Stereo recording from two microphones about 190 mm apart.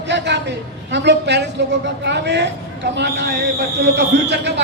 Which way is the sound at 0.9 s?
65° right (ahead or behind).